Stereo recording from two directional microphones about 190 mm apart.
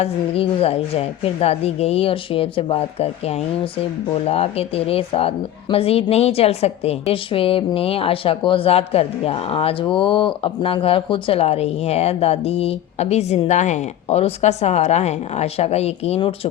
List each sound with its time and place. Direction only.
0.0 s speech: 30° left (ahead or behind)